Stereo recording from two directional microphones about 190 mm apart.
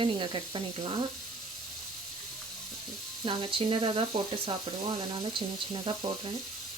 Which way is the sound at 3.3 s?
30° right (ahead or behind).